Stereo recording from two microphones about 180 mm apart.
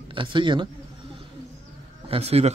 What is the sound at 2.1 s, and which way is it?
Speech, 35° right (ahead or behind).